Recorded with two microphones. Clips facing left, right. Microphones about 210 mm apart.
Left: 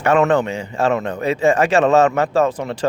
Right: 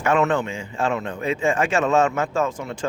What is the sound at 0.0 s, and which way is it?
Speech, 60° left (ahead or behind).